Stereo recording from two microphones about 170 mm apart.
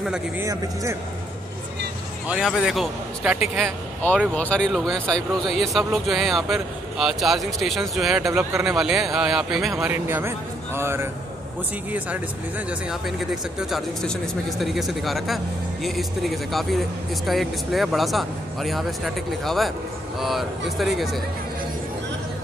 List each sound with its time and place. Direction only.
0.4 s speech: 15° right (ahead or behind)
2.2 s speech: 5° right (ahead or behind)
4.3 s speech: 5° left (ahead or behind)